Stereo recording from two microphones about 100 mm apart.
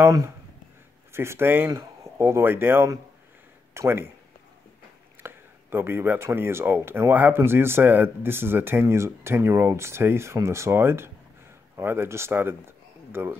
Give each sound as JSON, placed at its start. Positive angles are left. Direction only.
{"t": 1.1, "sound": "speech", "side_deg": -25}
{"t": 5.2, "sound": "speech", "side_deg": -20}